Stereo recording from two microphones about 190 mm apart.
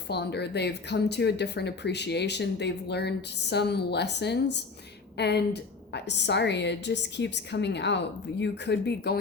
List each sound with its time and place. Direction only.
0.1 s speech: 60° left (ahead or behind)